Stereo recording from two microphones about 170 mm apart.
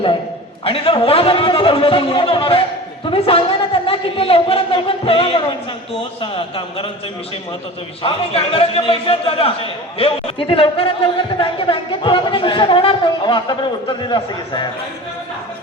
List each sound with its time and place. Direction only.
0.6 s speech: 30° left (ahead or behind)
8.0 s speech: 35° left (ahead or behind)